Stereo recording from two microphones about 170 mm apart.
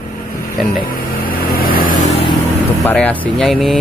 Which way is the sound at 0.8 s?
55° left (ahead or behind).